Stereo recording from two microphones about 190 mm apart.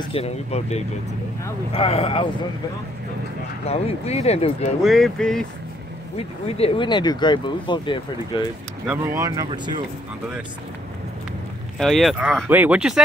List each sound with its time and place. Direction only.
0.1 s speech: 35° left (ahead or behind)
3.6 s speech: 35° left (ahead or behind)
4.8 s speech: centre (ahead or behind)
6.4 s speech: 30° left (ahead or behind)
8.8 s speech: 10° right (ahead or behind)
11.8 s speech: centre (ahead or behind)